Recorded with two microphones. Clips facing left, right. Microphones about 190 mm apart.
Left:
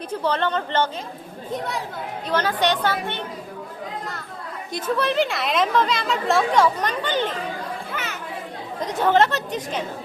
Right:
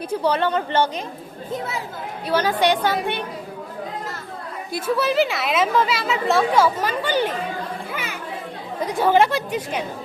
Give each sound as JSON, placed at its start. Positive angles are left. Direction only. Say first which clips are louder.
{"t": 0.1, "sound": "a woman's voice", "louder": "right 3 dB", "side_deg": -10}
{"t": 4.7, "sound": "a woman's voice", "louder": "right 2 dB", "side_deg": -5}
{"t": 8.8, "sound": "speech", "louder": "right 1 dB", "side_deg": -10}